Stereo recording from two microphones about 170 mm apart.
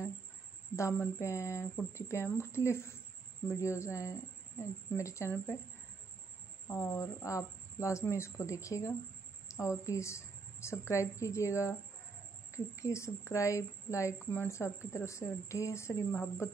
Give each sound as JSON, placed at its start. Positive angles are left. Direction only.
{"t": 0.7, "sound": "speech", "side_deg": 15}
{"t": 6.7, "sound": "a woman's voice", "side_deg": 15}